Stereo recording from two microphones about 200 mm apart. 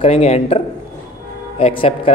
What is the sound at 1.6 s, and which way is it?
Speech, 30° left (ahead or behind).